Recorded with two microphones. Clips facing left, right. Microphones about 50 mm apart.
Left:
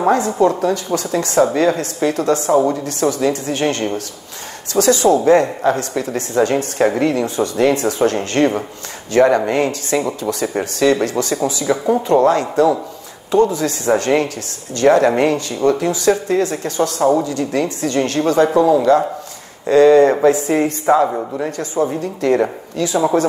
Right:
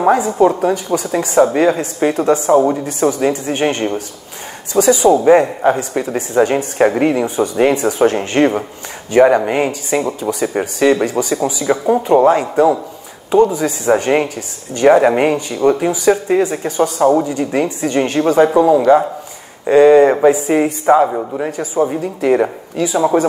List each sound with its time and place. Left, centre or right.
0.0 s speech: centre